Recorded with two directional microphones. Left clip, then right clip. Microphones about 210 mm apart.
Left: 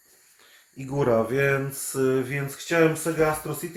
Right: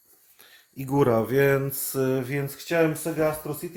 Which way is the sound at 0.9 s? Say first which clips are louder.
Right 1 dB; 55° right (ahead or behind).